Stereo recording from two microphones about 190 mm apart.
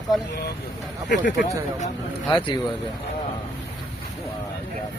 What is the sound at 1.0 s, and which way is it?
Speech, 65° left (ahead or behind).